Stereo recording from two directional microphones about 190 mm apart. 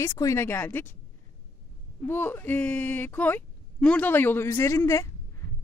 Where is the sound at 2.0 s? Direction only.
10° left (ahead or behind).